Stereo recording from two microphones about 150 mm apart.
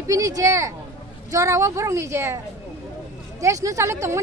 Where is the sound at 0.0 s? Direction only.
20° right (ahead or behind).